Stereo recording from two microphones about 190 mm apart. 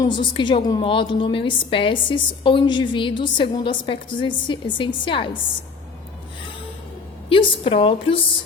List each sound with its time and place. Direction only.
0.0 s a woman's voice: 25° left (ahead or behind)
7.3 s a woman's voice: 30° left (ahead or behind)